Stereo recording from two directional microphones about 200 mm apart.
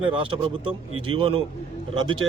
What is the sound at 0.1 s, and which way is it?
A man's voice, 25° right (ahead or behind).